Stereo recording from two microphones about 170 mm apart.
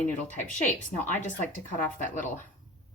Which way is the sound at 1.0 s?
45° left (ahead or behind).